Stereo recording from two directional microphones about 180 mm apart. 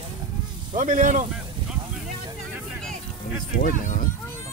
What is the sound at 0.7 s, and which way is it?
Speech, 45° right (ahead or behind).